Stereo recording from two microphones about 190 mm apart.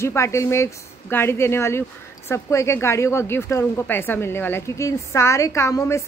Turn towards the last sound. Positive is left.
turn(degrees=15)  # may be behind; listen again after turning